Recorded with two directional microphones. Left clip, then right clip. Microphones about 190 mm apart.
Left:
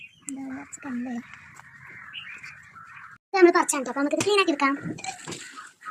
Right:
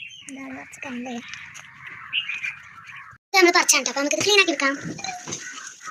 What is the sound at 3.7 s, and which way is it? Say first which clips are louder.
Speech: right 5 dB; 50° left (ahead or behind).